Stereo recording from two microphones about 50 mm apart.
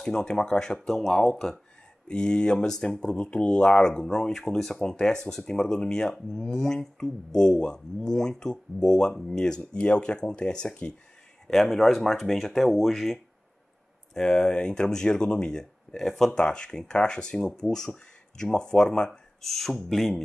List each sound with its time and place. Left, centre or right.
0.0 s speech: centre
2.0 s speech: centre
11.6 s speech: centre
14.1 s speech: centre